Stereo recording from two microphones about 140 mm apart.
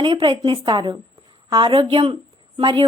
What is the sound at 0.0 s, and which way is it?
A woman's voice, 40° right (ahead or behind).